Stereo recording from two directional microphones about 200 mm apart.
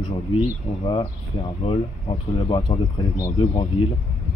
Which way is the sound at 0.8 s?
30° left (ahead or behind).